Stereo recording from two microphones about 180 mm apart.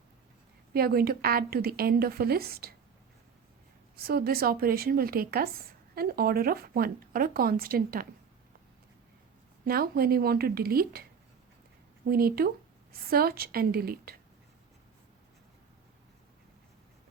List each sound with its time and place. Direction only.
0.7 s speech: 55° right (ahead or behind)
3.9 s speech: 55° right (ahead or behind)
9.6 s speech: 55° right (ahead or behind)
12.0 s speech: 55° right (ahead or behind)